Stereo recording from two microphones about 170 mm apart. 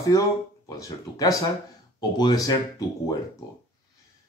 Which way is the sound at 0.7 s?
20° left (ahead or behind).